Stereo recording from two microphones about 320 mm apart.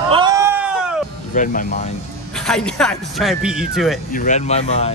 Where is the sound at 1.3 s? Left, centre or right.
Left.